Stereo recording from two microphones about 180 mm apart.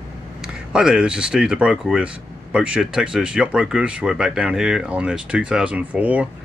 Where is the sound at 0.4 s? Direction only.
5° right (ahead or behind).